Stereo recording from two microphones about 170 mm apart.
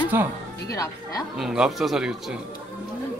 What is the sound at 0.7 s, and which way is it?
Speech, 20° left (ahead or behind).